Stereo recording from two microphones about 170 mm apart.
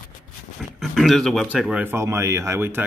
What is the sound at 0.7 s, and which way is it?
Speech, centre (ahead or behind).